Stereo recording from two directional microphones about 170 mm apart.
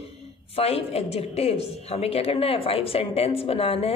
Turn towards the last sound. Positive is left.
turn(degrees=35)  # may be behind; listen again after turning